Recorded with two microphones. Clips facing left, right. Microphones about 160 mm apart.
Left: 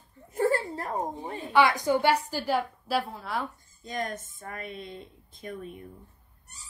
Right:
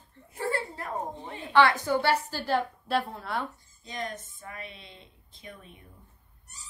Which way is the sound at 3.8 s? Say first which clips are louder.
Left 3 dB; 50° left (ahead or behind).